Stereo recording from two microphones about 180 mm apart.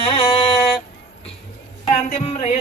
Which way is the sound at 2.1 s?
35° left (ahead or behind).